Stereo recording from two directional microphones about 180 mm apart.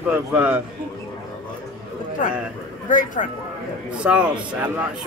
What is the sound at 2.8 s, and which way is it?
Speech, 50° left (ahead or behind).